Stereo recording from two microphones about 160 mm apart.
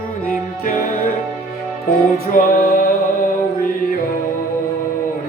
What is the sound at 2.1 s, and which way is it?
Music, 60° left (ahead or behind).